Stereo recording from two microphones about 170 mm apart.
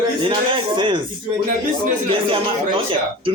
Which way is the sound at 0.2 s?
30° right (ahead or behind).